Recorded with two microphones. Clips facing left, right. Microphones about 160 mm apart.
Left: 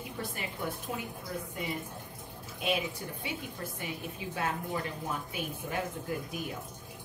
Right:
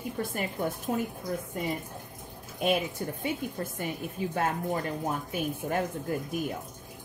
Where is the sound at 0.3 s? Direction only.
45° right (ahead or behind).